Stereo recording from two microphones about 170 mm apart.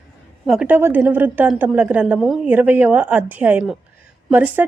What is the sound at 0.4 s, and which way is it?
Speech, centre (ahead or behind).